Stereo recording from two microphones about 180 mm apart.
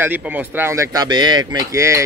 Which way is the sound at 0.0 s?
10° right (ahead or behind).